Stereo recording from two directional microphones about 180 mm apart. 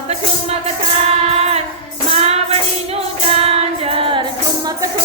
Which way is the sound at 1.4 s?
35° right (ahead or behind).